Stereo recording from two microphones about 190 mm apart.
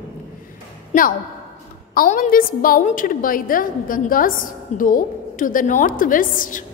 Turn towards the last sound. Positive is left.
turn(degrees=45)  # may be behind; listen again after turning